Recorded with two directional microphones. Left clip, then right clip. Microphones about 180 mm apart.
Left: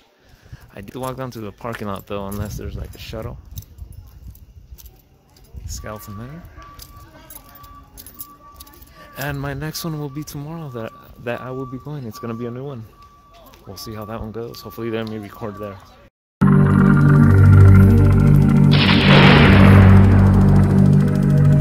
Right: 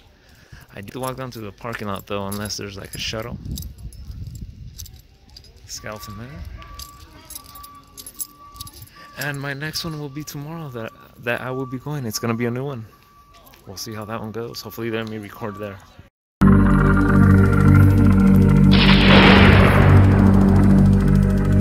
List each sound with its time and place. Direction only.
0.7 s speech: 10° left (ahead or behind)
2.6 s speech: 10° right (ahead or behind)
5.7 s speech: 10° left (ahead or behind)
8.9 s speech: 10° left (ahead or behind)
11.5 s speech: 20° right (ahead or behind)
13.7 s speech: centre (ahead or behind)
16.4 s music: centre (ahead or behind)